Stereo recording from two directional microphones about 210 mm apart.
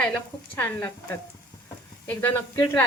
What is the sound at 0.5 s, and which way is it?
Speech, 10° left (ahead or behind).